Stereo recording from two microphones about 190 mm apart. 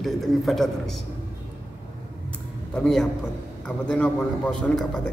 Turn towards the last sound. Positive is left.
turn(degrees=5)  # may be behind; listen again after turning